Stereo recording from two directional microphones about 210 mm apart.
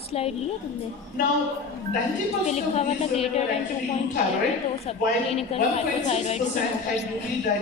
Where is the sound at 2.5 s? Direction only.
30° left (ahead or behind).